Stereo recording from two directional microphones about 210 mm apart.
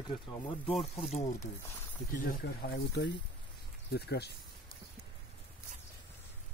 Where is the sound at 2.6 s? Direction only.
50° left (ahead or behind).